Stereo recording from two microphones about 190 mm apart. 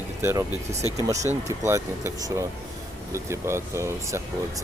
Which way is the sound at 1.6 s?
15° right (ahead or behind).